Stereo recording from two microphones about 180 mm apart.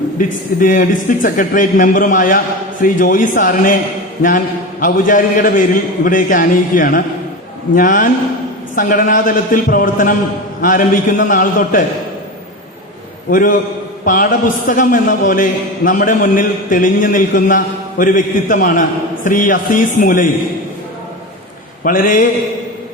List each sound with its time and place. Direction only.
0.2 s a man's voice: 50° left (ahead or behind)
13.3 s a man's voice: 50° left (ahead or behind)
21.8 s a man's voice: 50° left (ahead or behind)